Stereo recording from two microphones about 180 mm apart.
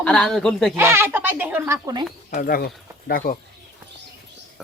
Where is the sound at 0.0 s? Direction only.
5° left (ahead or behind).